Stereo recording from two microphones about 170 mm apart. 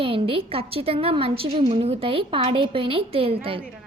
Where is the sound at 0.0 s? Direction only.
30° right (ahead or behind).